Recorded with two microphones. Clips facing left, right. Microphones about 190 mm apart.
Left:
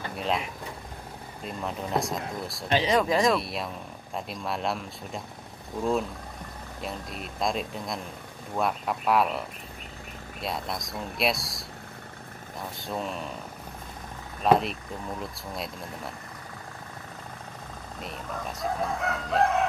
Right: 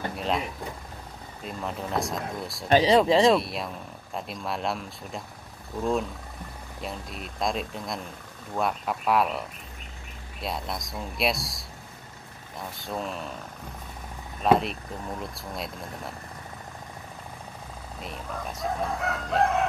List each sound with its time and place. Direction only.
0.1 s a sound: centre (ahead or behind)
1.4 s speech: centre (ahead or behind)
2.7 s speech: 35° right (ahead or behind)
3.3 s speech: centre (ahead or behind)
6.8 s speech: centre (ahead or behind)
14.4 s speech: centre (ahead or behind)
18.0 s speech: centre (ahead or behind)